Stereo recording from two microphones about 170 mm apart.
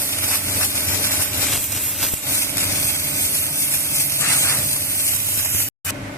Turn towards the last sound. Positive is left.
turn(degrees=15)  # may be behind; listen again after turning